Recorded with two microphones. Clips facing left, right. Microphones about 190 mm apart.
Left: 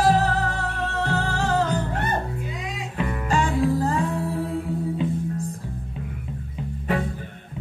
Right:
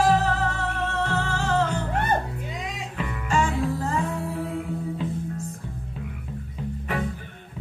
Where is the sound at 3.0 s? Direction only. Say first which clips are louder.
Left 1 dB; 35° left (ahead or behind).